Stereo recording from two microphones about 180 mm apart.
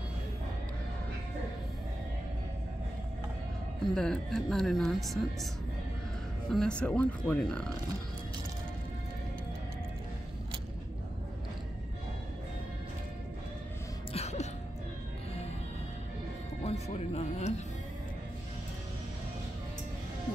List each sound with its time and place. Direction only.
3.9 s speech: 5° left (ahead or behind)
6.5 s speech: 5° left (ahead or behind)
14.1 s music: 35° left (ahead or behind)
16.6 s music: 35° left (ahead or behind)